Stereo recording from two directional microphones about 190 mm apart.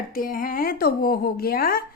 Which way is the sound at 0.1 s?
50° left (ahead or behind).